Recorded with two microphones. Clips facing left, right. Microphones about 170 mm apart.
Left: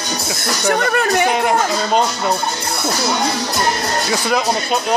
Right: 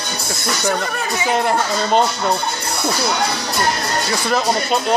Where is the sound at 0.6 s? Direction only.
65° left (ahead or behind).